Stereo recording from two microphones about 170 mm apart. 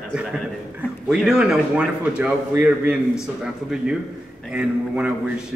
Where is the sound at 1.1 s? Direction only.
5° right (ahead or behind).